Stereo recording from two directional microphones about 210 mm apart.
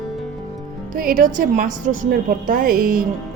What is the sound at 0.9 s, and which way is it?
A woman's voice, 40° right (ahead or behind).